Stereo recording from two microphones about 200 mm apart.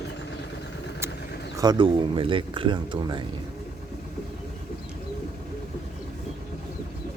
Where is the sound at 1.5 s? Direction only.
20° right (ahead or behind).